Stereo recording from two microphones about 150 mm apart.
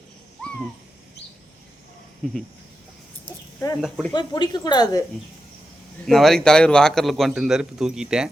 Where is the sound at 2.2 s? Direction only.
Centre (ahead or behind).